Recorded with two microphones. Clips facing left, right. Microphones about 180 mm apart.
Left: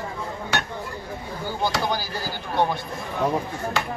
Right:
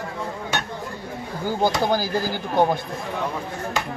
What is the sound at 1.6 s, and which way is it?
Speech, 45° right (ahead or behind).